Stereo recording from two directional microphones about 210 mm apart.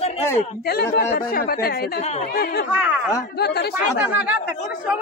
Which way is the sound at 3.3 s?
50° left (ahead or behind).